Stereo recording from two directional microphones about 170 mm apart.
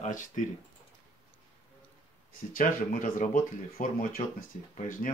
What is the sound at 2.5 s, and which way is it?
Speech, 55° left (ahead or behind).